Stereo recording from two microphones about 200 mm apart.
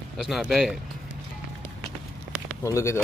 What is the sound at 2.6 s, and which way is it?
Speech, 15° left (ahead or behind).